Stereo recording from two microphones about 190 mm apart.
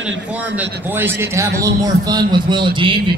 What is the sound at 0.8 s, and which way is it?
A man's voice, 10° right (ahead or behind).